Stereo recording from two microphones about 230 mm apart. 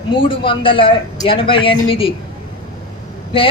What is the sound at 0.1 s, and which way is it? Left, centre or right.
Speech, left.